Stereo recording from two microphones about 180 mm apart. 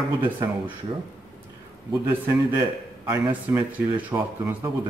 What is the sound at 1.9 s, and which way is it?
A man's voice, 15° right (ahead or behind).